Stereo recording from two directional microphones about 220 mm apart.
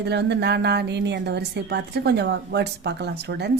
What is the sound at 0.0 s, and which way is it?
A woman's voice, 50° right (ahead or behind).